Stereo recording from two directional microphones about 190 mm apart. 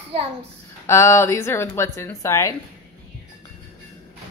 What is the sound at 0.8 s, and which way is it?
A woman's voice, 15° left (ahead or behind).